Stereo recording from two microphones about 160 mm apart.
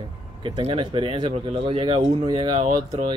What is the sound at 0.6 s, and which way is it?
Speech, 35° right (ahead or behind).